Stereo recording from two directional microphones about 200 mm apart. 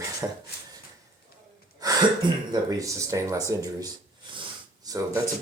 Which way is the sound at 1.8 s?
20° right (ahead or behind).